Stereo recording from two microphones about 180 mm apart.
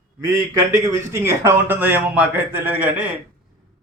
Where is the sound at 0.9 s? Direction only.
15° right (ahead or behind).